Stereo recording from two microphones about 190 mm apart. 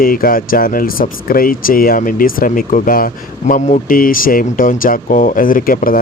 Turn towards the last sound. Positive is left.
turn(degrees=50)  # may be behind; listen again after turning